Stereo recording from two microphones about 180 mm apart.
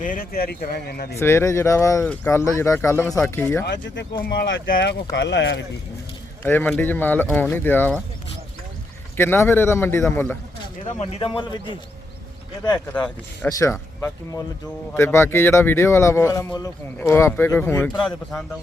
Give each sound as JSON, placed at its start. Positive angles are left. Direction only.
{"t": 0.0, "sound": "speech", "side_deg": 50}
{"t": 1.2, "sound": "speech", "side_deg": 15}
{"t": 3.7, "sound": "speech", "side_deg": 85}
{"t": 5.1, "sound": "speech", "side_deg": 80}
{"t": 6.4, "sound": "speech", "side_deg": 10}
{"t": 9.1, "sound": "speech", "side_deg": 15}
{"t": 11.0, "sound": "a man's voice", "side_deg": 30}
{"t": 12.9, "sound": "speech", "side_deg": 5}